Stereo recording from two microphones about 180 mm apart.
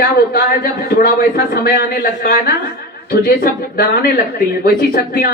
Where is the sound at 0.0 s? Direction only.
55° left (ahead or behind).